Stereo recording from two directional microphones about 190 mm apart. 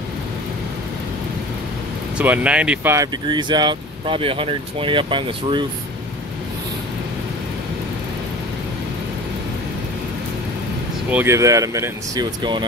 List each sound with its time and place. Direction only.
2.1 s speech: 5° right (ahead or behind); by 5.7 s 25° right (ahead or behind)
11.1 s speech: 10° right (ahead or behind)